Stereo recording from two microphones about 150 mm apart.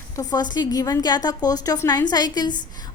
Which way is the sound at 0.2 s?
25° left (ahead or behind).